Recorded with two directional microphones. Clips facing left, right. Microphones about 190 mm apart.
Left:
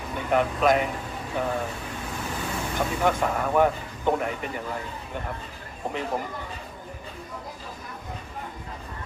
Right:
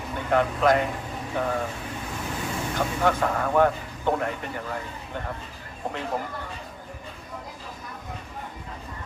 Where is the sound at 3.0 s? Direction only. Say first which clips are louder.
Right 1 dB; 15° left (ahead or behind).